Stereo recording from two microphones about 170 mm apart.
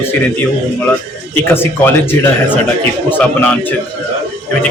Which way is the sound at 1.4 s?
15° left (ahead or behind).